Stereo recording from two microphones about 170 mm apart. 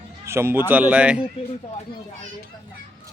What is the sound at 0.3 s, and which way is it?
Speech, 15° right (ahead or behind).